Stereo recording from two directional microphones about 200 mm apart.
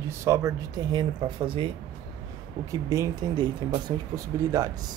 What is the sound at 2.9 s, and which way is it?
Speech, 20° right (ahead or behind).